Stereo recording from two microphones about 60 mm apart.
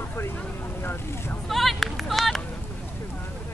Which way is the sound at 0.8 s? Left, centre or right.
Left.